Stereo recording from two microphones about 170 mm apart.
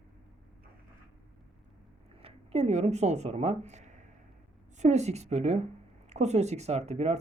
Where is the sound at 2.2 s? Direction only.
35° right (ahead or behind).